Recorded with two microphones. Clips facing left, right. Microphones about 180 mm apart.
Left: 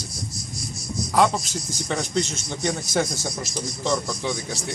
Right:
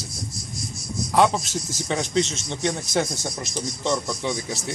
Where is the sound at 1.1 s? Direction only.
Centre (ahead or behind).